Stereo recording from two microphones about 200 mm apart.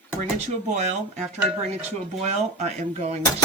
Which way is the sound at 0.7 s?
35° right (ahead or behind).